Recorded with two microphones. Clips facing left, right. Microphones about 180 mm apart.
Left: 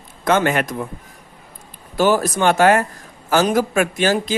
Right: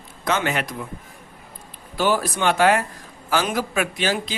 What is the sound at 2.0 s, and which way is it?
Speech, 45° left (ahead or behind).